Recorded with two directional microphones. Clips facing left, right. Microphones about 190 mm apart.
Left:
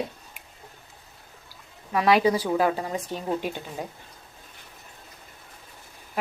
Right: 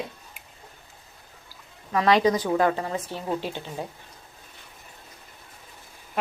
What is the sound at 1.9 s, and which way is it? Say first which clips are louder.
A woman's voice: even; 10° left (ahead or behind).